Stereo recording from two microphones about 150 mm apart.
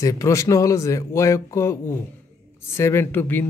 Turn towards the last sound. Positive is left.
turn(degrees=15)  # may be behind; listen again after turning